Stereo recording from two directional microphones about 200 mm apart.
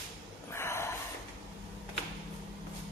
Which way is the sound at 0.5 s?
15° left (ahead or behind).